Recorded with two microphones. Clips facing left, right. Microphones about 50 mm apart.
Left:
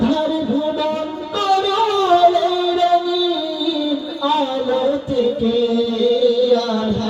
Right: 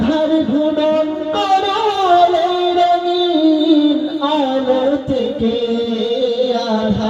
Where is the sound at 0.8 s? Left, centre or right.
Right.